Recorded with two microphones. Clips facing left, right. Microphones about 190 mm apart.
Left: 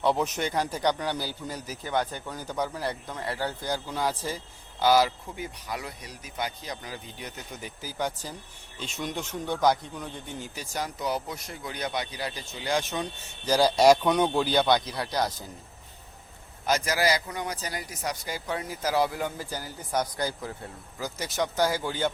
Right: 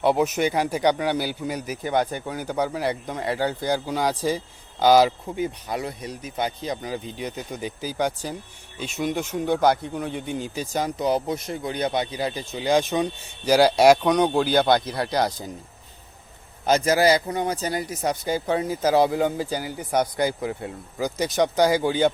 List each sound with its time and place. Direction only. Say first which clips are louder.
0.0 s speech: right 6 dB; 10° right (ahead or behind)
2.5 s speech: right 6 dB; 70° right (ahead or behind)
3.1 s speech: right 7 dB; 15° right (ahead or behind)
3.3 s speech: right 7 dB; 65° right (ahead or behind); by 4.3 s 85° right
4.3 s speech: right 9 dB; 15° right (ahead or behind)
8.8 s speech: right 7 dB; 10° right (ahead or behind)
9.6 s speech: even; 60° right (ahead or behind)
10.2 s speech: right 9 dB; 20° right (ahead or behind); by 14.5 s centre (ahead or behind)
14.5 s speech: right 4 dB; 50° right (ahead or behind); by 15.3 s 65° right (ahead or behind)
16.6 s speech: right 7 dB; 25° right (ahead or behind)
19.5 s speech: right 7 dB; 70° right (ahead or behind)
20.2 s speech: right 7 dB; 10° right (ahead or behind)